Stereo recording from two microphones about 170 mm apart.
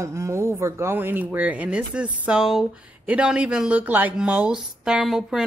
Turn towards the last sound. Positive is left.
turn(degrees=0)  # may be behind; listen again after turning